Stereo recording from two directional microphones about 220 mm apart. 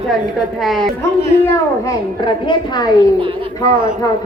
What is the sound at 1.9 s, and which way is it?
A woman's voice, 20° left (ahead or behind).